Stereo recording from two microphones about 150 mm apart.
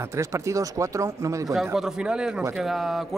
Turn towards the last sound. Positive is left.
turn(degrees=0)  # may be behind; listen again after turning